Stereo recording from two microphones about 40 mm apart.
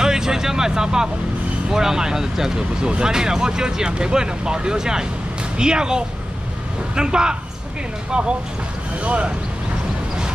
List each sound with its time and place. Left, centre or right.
0.0 s speech: centre; by 9.3 s right